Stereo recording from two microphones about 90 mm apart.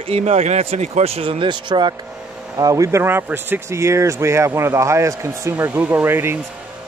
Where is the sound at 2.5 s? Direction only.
40° right (ahead or behind).